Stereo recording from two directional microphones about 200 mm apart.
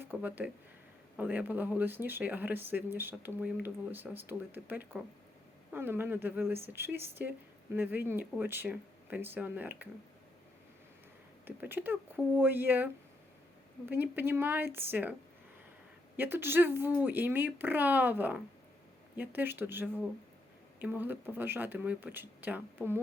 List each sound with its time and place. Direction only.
0.0 s speech: 10° right (ahead or behind)
11.4 s speech: 10° right (ahead or behind)
16.1 s speech: 10° right (ahead or behind)